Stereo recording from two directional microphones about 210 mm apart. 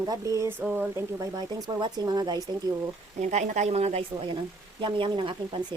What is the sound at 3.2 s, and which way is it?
A woman's voice, 35° right (ahead or behind).